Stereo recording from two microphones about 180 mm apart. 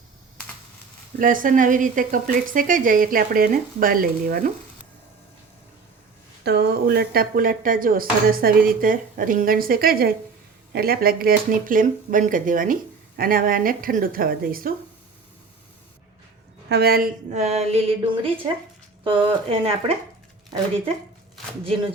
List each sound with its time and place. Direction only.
1.2 s speech: 50° right (ahead or behind)
6.4 s speech: 65° right (ahead or behind)
16.6 s a woman's voice: 65° right (ahead or behind)
17.3 s a sound: 35° right (ahead or behind)
19.0 s speech: 30° right (ahead or behind)
21.6 s a sound: 30° right (ahead or behind)